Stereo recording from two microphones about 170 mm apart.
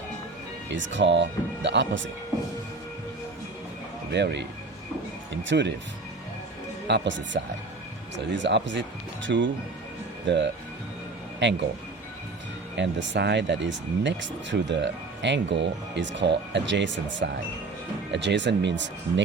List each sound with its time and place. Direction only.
0.7 s speech: 90° right
4.1 s speech: 90° right
6.8 s speech: 90° right
12.7 s speech: 90° right